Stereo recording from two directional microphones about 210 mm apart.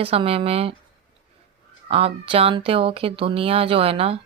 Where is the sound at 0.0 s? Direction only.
25° right (ahead or behind).